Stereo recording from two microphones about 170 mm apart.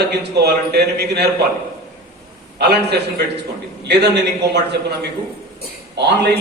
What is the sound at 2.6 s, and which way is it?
Speech, 75° right (ahead or behind).